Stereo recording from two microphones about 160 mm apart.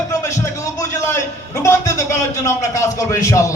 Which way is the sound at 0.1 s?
20° left (ahead or behind).